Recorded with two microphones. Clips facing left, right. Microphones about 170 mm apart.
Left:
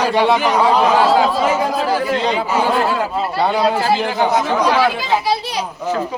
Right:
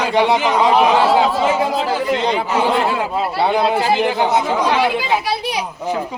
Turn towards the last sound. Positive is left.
turn(degrees=-15)  # may be behind; listen again after turning